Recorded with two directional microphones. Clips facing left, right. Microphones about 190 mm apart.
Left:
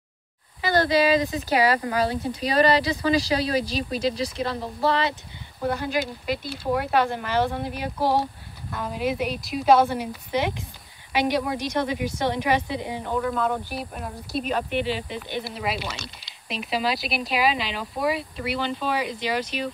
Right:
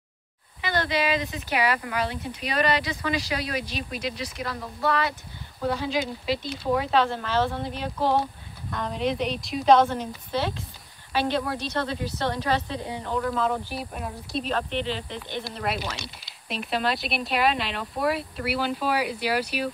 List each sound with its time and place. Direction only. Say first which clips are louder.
0.6 s speech: left 6 dB; 35° left (ahead or behind)
5.6 s speech: left 1 dB; 5° left (ahead or behind)